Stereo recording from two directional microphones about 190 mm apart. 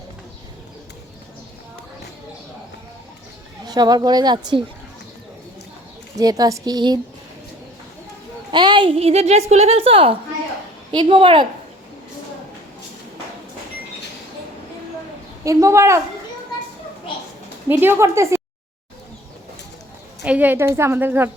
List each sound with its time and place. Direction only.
3.7 s speech: 20° right (ahead or behind)
6.1 s speech: 20° right (ahead or behind)
8.5 s a woman's voice: 25° right (ahead or behind)
15.4 s a woman's voice: 15° right (ahead or behind)
17.7 s a woman's voice: 10° right (ahead or behind)
20.2 s a woman's voice: 5° right (ahead or behind)